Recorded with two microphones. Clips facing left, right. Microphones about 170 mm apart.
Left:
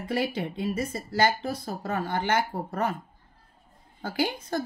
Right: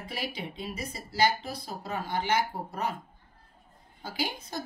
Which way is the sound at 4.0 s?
55° left (ahead or behind).